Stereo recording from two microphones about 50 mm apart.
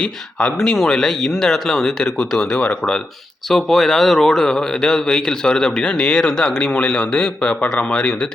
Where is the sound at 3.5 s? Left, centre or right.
Centre; by 8.1 s left.